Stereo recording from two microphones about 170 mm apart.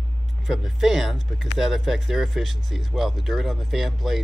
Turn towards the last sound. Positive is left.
turn(degrees=0)  # may be behind; listen again after turning